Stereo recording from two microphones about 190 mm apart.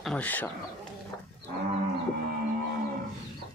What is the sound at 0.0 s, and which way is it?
Speech, 5° left (ahead or behind).